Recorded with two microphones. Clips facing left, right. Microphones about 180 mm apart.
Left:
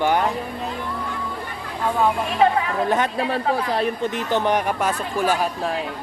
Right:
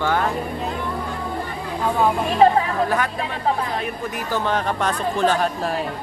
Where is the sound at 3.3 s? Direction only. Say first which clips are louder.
Left 2 dB; 30° left (ahead or behind); by 5.8 s 5° left (ahead or behind).